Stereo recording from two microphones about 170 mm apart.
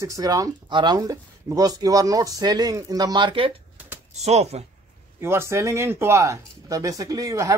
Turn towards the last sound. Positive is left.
turn(degrees=-20)  # may be behind; listen again after turning